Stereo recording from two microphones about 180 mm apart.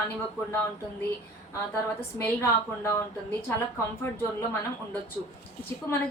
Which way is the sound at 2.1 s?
15° left (ahead or behind).